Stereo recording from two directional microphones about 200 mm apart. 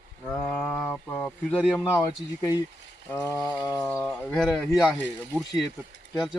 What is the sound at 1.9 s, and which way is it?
Speech, 15° left (ahead or behind).